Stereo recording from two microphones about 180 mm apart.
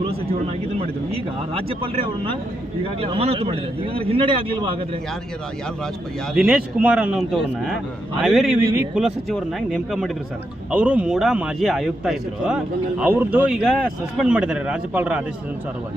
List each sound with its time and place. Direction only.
0.8 s a man's voice: 30° right (ahead or behind)
6.3 s a man's voice: 5° right (ahead or behind)